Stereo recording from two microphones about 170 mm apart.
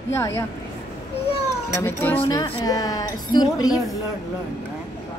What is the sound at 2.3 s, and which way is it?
A woman's voice, 20° left (ahead or behind).